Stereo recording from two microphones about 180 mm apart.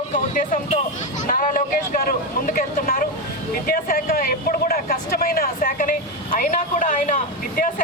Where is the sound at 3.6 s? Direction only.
50° left (ahead or behind).